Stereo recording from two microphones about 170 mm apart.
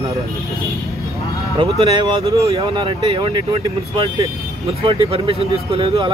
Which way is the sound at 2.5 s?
30° right (ahead or behind).